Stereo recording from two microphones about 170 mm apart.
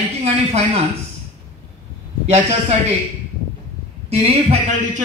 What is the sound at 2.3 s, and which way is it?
Speech, 40° right (ahead or behind).